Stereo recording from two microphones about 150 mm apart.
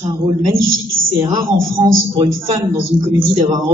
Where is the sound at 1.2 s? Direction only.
30° right (ahead or behind).